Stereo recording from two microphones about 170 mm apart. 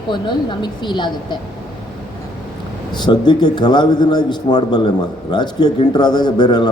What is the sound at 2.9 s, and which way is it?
A woman's voice, 25° left (ahead or behind).